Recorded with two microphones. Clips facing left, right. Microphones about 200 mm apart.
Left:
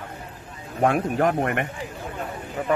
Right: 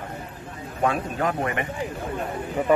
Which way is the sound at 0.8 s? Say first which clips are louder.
Left 4 dB; 60° left (ahead or behind).